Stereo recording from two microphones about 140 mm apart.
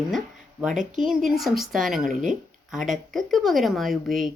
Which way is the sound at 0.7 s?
65° right (ahead or behind).